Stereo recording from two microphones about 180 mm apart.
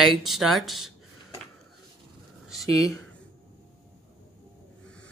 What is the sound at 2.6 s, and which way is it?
Speech, 20° left (ahead or behind).